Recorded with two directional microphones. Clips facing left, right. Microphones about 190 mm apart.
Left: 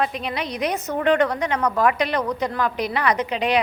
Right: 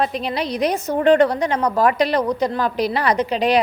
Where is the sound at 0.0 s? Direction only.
35° right (ahead or behind).